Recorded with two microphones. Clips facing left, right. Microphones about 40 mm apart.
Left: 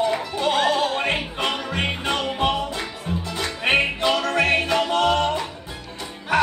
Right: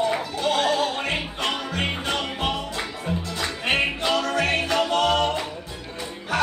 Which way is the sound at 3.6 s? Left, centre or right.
Centre.